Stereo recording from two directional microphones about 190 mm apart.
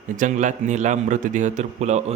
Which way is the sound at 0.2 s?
40° right (ahead or behind).